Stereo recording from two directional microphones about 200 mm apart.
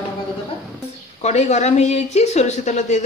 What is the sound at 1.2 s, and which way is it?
A woman's voice, 35° left (ahead or behind).